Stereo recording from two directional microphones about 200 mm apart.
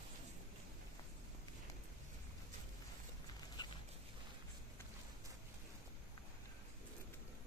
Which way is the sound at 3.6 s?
20° left (ahead or behind).